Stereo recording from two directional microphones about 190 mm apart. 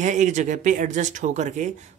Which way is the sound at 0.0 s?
40° right (ahead or behind).